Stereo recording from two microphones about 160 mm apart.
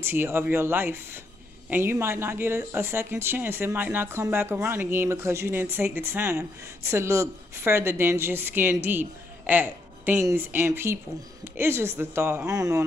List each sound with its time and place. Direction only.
0.0 s speech: 15° right (ahead or behind)